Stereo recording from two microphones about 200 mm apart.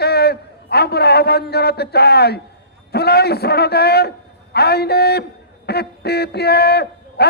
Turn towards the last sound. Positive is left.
turn(degrees=55)  # may be behind; listen again after turning